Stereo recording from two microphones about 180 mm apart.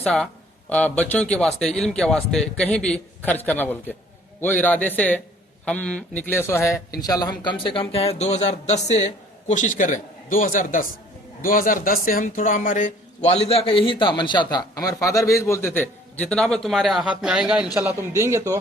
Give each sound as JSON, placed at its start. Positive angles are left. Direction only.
{"t": 0.0, "sound": "a man's voice", "side_deg": 5}